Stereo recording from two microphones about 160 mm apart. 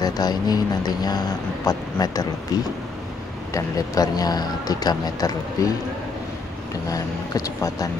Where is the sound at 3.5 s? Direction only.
25° left (ahead or behind).